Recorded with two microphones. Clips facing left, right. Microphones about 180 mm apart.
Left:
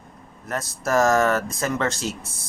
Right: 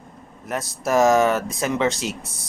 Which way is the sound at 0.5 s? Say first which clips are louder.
Right 2 dB; centre (ahead or behind).